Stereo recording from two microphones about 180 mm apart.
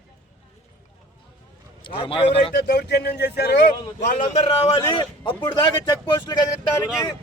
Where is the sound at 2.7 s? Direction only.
65° left (ahead or behind).